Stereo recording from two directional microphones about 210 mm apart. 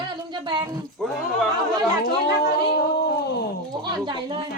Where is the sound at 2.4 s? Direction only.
50° left (ahead or behind).